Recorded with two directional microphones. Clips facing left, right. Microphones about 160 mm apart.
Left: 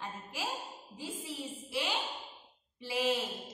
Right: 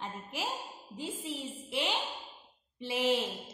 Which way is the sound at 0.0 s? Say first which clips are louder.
Right 2 dB; 20° right (ahead or behind).